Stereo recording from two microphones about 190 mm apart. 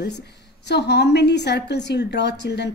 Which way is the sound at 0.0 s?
60° left (ahead or behind).